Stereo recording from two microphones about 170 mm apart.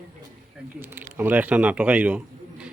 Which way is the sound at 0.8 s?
10° right (ahead or behind).